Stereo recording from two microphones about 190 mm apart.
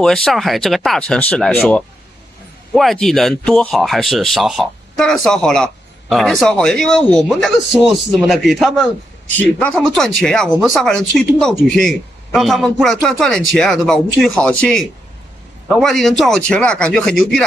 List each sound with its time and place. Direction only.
0.0 s speech: 5° left (ahead or behind)